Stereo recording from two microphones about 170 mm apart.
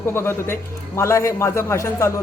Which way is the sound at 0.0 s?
15° left (ahead or behind).